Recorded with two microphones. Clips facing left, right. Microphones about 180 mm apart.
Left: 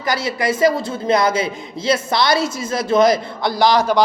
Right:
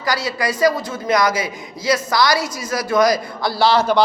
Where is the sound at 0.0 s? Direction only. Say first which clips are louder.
Left 1 dB; 25° left (ahead or behind).